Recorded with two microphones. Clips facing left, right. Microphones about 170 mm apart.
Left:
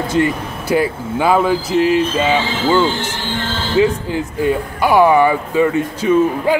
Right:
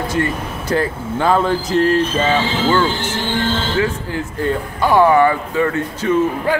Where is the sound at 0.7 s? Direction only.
10° left (ahead or behind).